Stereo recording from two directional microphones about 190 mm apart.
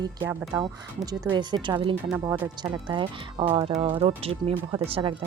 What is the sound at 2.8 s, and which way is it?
Speech, 25° right (ahead or behind).